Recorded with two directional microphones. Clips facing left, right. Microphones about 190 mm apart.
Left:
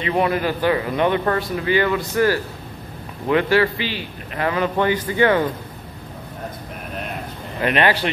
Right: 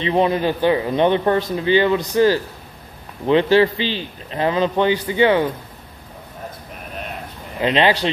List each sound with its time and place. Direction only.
0.0 s a man's voice: 25° right (ahead or behind)
7.6 s a man's voice: 20° right (ahead or behind)